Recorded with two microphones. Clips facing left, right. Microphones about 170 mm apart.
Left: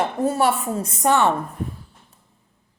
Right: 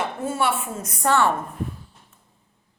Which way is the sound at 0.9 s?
20° left (ahead or behind).